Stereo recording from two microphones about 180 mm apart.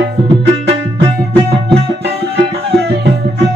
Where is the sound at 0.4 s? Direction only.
70° right (ahead or behind).